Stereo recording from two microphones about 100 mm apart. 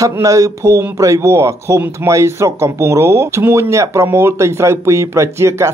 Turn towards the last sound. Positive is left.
turn(degrees=-30)  # may be behind; listen again after turning